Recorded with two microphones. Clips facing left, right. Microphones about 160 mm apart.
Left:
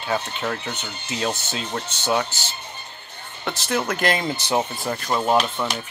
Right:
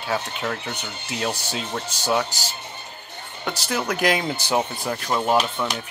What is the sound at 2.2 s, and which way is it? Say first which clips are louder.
Speech: right 2 dB; 35° right (ahead or behind).